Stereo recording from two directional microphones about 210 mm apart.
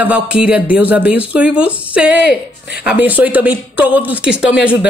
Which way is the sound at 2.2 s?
50° left (ahead or behind).